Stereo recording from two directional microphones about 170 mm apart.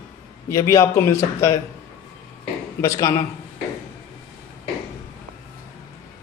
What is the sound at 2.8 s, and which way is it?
Speech, 20° left (ahead or behind).